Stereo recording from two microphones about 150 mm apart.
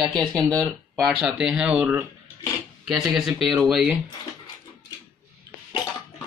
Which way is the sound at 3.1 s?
Centre (ahead or behind).